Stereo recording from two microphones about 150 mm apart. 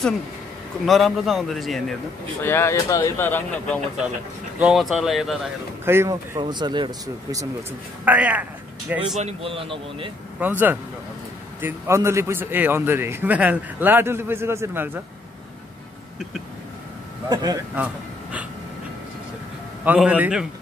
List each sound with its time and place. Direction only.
0.8 s a man's voice: centre (ahead or behind)
2.4 s speech: 15° left (ahead or behind)
4.6 s a man's voice: 5° right (ahead or behind)
5.9 s speech: 20° right (ahead or behind)
6.4 s speech: 30° right (ahead or behind)
8.0 s a man's voice: 10° right (ahead or behind)
9.2 s speech: 40° right (ahead or behind)
10.4 s a man's voice: 10° right (ahead or behind)
17.3 s speech: 25° right (ahead or behind)
17.7 s speech: 10° right (ahead or behind)
19.8 s a man's voice: 10° right (ahead or behind)